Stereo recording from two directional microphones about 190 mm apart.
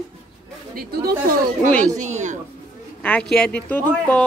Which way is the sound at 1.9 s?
40° right (ahead or behind).